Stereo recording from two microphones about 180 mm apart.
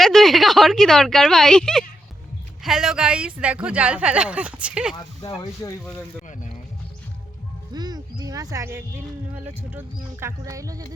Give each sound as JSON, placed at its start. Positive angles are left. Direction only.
{"t": 0.0, "sound": "speech", "side_deg": 0}
{"t": 4.9, "sound": "speech", "side_deg": 25}
{"t": 7.7, "sound": "music", "side_deg": -20}
{"t": 9.3, "sound": "speech", "side_deg": -10}